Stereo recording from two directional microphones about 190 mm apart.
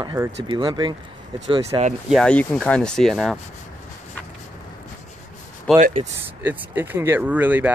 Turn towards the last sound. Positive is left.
turn(degrees=-10)  # may be behind; listen again after turning